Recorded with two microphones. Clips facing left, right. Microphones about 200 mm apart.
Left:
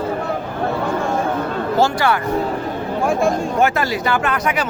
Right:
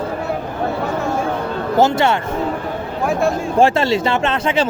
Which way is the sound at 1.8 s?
25° right (ahead or behind).